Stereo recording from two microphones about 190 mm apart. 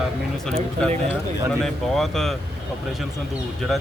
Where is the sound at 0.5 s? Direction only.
30° right (ahead or behind).